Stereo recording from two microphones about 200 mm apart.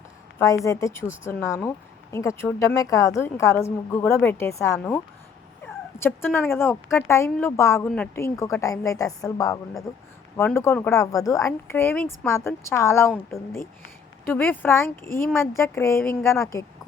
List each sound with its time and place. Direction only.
0.3 s speech: 15° left (ahead or behind)
5.6 s dog: 10° left (ahead or behind)
6.5 s speech: 10° left (ahead or behind)
14.3 s speech: 10° left (ahead or behind)